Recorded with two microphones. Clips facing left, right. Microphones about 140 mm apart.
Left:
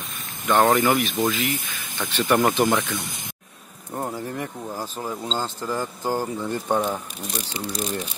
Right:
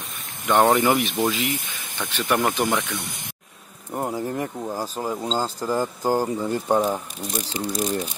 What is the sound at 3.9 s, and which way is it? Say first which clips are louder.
Speech: right 3 dB; 15° right (ahead or behind).